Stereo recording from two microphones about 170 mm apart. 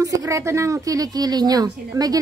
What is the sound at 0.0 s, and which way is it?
Speech, 20° right (ahead or behind).